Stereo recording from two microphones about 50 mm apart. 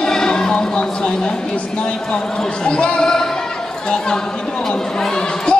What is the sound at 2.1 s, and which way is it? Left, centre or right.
Speech, centre.